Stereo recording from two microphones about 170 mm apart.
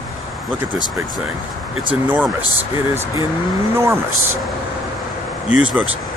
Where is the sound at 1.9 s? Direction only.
10° right (ahead or behind).